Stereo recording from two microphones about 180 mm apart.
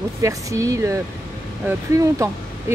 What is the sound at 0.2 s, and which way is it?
Speech, 15° right (ahead or behind).